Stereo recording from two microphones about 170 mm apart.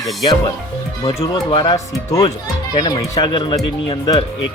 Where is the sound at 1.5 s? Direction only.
30° left (ahead or behind).